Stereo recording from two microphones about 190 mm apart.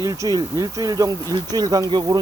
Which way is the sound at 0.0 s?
20° right (ahead or behind).